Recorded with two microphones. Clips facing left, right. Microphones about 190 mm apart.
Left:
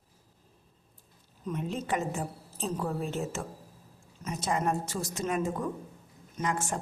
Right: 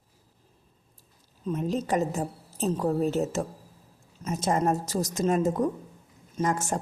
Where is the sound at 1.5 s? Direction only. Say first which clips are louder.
Right 5 dB; 35° right (ahead or behind).